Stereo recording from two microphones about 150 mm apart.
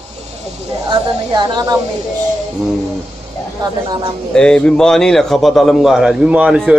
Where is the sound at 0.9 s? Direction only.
30° right (ahead or behind).